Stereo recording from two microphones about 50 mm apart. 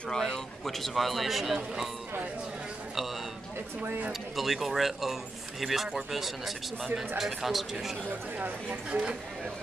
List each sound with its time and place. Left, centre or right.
0.1 s speech: centre
4.1 s speech: centre
8.4 s speech: right